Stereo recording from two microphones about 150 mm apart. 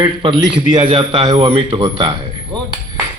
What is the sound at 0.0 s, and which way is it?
Speech, 35° right (ahead or behind).